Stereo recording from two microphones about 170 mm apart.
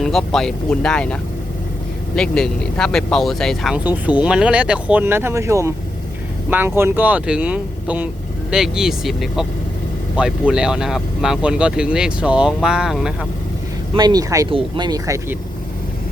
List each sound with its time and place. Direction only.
0.0 s speech: centre (ahead or behind)
13.9 s speech: 25° right (ahead or behind)